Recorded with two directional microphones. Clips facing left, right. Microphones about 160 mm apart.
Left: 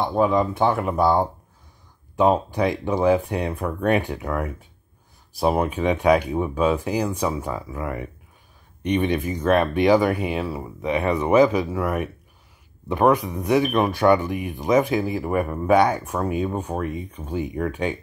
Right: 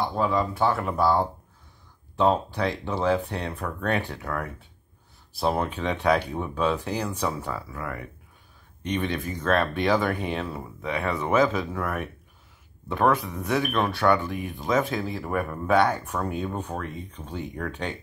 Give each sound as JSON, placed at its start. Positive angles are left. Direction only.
{"t": 0.0, "sound": "speech", "side_deg": 20}